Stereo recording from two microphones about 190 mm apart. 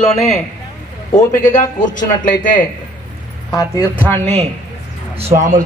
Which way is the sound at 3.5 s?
15° left (ahead or behind).